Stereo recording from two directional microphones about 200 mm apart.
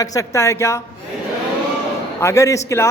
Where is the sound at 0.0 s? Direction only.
15° left (ahead or behind).